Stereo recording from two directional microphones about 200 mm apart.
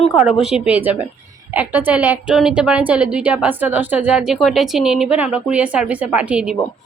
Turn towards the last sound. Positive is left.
turn(degrees=-5)  # may be behind; listen again after turning